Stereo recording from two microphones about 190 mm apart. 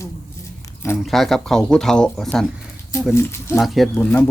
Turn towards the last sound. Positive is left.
turn(degrees=0)  # may be behind; listen again after turning